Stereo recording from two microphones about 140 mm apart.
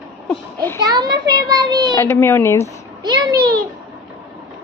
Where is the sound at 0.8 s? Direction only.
30° right (ahead or behind).